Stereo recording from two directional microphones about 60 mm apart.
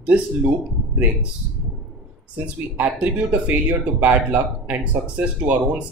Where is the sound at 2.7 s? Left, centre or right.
Right.